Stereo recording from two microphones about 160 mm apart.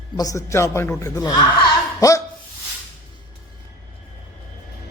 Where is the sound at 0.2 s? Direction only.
20° left (ahead or behind).